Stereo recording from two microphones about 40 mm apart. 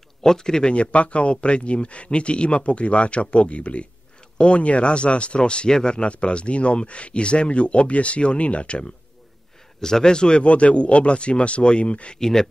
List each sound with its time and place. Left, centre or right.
0.2 s a man's voice: centre
0.7 s speech: left
9.8 s a man's voice: centre
10.4 s speech: left
12.2 s a man's voice: centre